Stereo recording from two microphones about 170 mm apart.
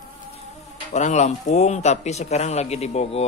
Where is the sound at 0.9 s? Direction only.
45° left (ahead or behind).